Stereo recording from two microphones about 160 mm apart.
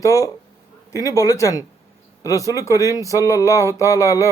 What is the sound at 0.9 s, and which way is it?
A man's voice, 20° left (ahead or behind).